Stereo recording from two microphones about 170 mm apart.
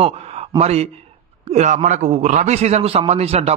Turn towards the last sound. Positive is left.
turn(degrees=-40)  # may be behind; listen again after turning